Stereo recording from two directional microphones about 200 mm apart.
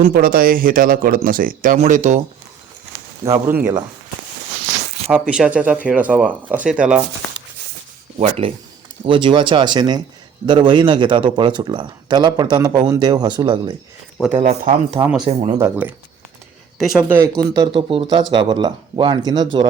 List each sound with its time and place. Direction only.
0.1 s speech: 45° right (ahead or behind)
3.2 s speech: 10° right (ahead or behind)
5.1 s speech: 5° right (ahead or behind)
8.2 s speech: 30° right (ahead or behind)
14.3 s speech: 35° right (ahead or behind)
15.5 s speech: 10° right (ahead or behind)
16.7 s speech: centre (ahead or behind); by 19.5 s 20° right (ahead or behind)